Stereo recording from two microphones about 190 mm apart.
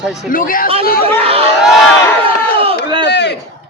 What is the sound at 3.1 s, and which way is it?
Speech, 65° left (ahead or behind).